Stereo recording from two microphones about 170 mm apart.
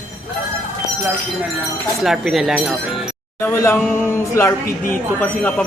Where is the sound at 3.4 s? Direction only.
15° left (ahead or behind).